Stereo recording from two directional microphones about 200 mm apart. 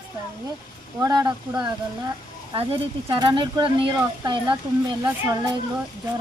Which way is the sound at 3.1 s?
20° right (ahead or behind).